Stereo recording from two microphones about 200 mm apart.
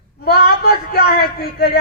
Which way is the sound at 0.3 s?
50° left (ahead or behind).